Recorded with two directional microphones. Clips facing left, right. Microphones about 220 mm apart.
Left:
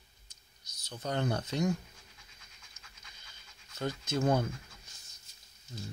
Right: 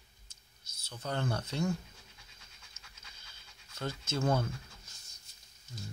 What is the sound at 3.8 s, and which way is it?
Speech, 15° left (ahead or behind).